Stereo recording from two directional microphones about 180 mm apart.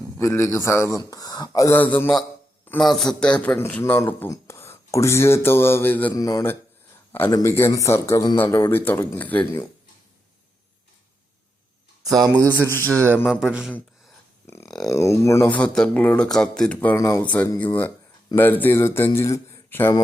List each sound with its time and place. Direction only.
0.2 s a man's voice: 15° left (ahead or behind)
12.0 s a man's voice: centre (ahead or behind)
13.2 s a man's voice: 5° right (ahead or behind)
14.4 s a sound: 15° left (ahead or behind)
14.8 s a man's voice: 15° left (ahead or behind)